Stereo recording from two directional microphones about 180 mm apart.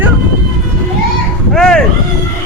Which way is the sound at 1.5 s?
5° left (ahead or behind).